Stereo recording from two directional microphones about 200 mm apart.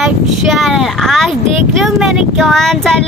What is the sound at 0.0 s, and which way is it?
A woman's voice, centre (ahead or behind).